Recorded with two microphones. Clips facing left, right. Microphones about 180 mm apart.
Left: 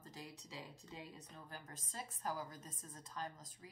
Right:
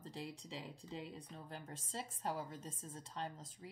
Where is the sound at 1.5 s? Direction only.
30° right (ahead or behind).